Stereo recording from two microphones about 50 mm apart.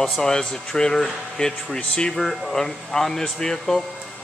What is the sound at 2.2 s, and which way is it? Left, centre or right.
Speech, centre.